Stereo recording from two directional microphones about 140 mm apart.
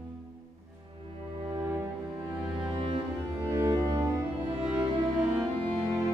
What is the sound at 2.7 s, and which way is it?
Cello, 40° right (ahead or behind).